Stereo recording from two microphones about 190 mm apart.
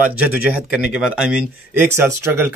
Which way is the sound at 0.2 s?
5° right (ahead or behind).